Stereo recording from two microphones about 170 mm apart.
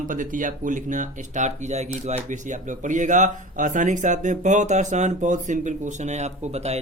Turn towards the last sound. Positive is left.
turn(degrees=-40)  # may be behind; listen again after turning